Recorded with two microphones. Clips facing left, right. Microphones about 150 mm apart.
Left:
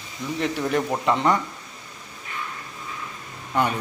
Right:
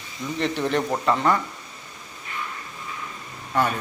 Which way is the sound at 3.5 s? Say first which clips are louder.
Even; 15° left (ahead or behind).